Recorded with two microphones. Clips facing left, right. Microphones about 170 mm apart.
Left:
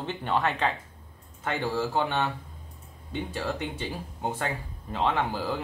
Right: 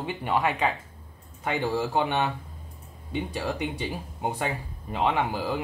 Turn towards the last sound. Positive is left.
turn(degrees=-15)  # may be behind; listen again after turning